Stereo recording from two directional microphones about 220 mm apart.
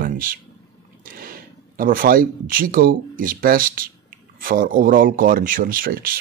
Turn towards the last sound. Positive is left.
turn(degrees=-40)  # may be behind; listen again after turning